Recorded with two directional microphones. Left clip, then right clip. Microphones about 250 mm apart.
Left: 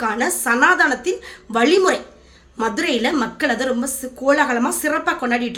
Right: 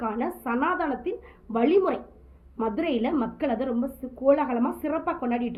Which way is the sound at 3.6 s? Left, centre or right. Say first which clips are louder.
Left 8 dB; left.